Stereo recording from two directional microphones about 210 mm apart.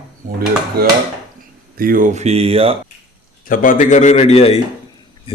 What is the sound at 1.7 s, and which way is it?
Speech, 45° right (ahead or behind).